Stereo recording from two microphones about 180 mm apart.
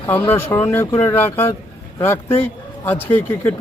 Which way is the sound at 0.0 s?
10° left (ahead or behind).